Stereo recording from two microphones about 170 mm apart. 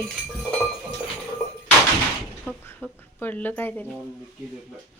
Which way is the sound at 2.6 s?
10° left (ahead or behind).